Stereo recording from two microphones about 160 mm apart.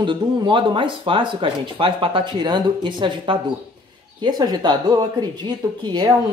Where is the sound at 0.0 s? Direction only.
30° right (ahead or behind).